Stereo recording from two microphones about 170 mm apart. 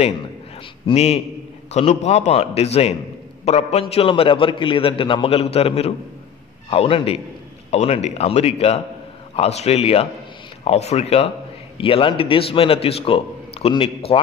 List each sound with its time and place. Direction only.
0.8 s a man's voice: 35° left (ahead or behind)